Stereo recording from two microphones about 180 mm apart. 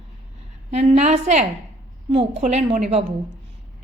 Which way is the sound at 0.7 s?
35° right (ahead or behind).